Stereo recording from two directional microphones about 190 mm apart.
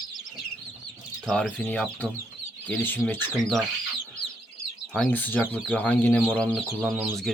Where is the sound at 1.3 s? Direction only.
5° left (ahead or behind).